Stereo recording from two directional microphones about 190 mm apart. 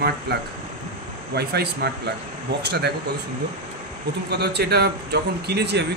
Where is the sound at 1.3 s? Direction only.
60° right (ahead or behind).